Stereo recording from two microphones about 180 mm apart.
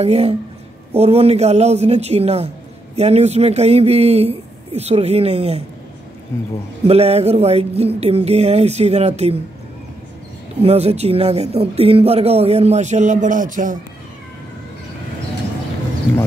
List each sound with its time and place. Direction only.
0.0 s speech: 35° right (ahead or behind)
6.9 s speech: 35° right (ahead or behind)
10.6 s speech: 35° right (ahead or behind)